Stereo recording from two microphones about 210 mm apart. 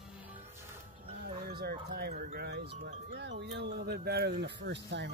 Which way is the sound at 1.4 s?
45° right (ahead or behind).